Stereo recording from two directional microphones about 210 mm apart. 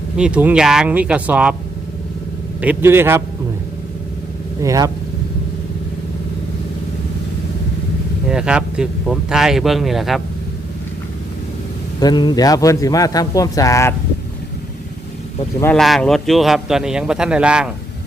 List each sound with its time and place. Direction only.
0.2 s a man's voice: 5° right (ahead or behind)
2.6 s a man's voice: 10° right (ahead or behind)
4.6 s a man's voice: 15° right (ahead or behind)
8.3 s a man's voice: 5° right (ahead or behind)
11.9 s speech: 20° left (ahead or behind)
15.6 s a man's voice: centre (ahead or behind)